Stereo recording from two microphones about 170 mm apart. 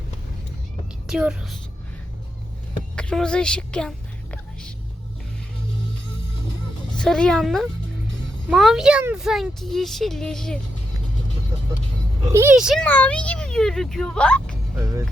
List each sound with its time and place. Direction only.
1.0 s a woman's voice: 5° right (ahead or behind)
2.9 s whispering: 5° left (ahead or behind)
6.9 s speech: 5° left (ahead or behind)
12.3 s speech: 15° right (ahead or behind)
12.5 s speech: 5° right (ahead or behind)
12.8 s speech: 10° left (ahead or behind)
14.8 s speech: 20° right (ahead or behind)